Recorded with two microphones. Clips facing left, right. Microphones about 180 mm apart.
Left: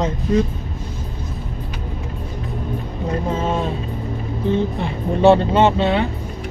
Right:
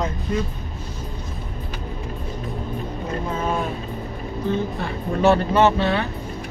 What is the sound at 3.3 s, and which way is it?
Speech, 25° left (ahead or behind).